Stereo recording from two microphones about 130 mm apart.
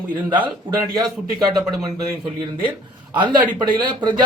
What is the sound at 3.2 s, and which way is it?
Speech, 35° right (ahead or behind).